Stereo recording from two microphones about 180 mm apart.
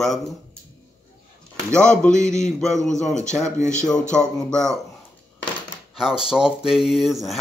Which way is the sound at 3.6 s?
40° left (ahead or behind).